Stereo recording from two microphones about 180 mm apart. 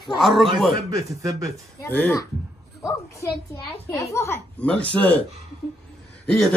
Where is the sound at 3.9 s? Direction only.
15° left (ahead or behind).